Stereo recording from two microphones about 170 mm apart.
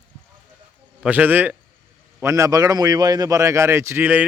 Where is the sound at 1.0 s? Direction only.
10° right (ahead or behind).